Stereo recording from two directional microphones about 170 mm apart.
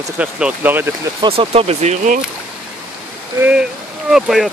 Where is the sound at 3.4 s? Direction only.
5° right (ahead or behind).